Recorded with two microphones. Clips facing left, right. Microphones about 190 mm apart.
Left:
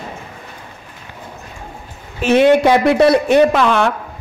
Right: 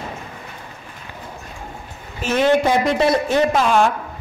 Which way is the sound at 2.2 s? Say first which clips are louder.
Left 6 dB; 70° left (ahead or behind).